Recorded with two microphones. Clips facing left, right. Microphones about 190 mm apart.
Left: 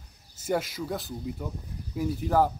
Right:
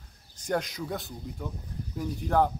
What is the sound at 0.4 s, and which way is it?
Speech, 5° left (ahead or behind).